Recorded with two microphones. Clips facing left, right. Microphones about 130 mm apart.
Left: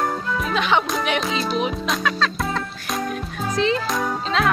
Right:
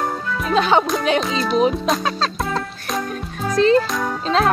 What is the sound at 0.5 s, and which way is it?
Speech, 35° right (ahead or behind).